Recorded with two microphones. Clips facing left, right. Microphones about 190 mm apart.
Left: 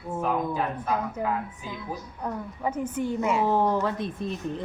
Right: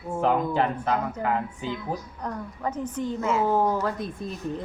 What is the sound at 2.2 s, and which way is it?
A woman's voice, 10° left (ahead or behind).